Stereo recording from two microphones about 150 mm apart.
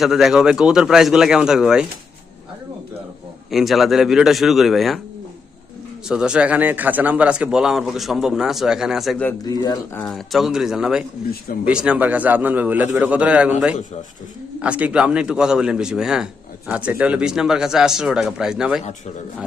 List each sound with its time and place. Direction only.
0.0 s a man's voice: centre (ahead or behind)
3.5 s a man's voice: centre (ahead or behind)
6.1 s a man's voice: 5° right (ahead or behind)
9.4 s speech: 25° left (ahead or behind)
9.9 s a man's voice: 5° left (ahead or behind)